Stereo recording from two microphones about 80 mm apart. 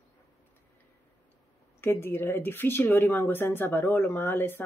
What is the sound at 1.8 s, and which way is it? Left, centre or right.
Speech, left.